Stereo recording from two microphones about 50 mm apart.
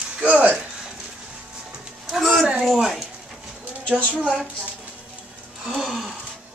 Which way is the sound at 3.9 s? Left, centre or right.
Left.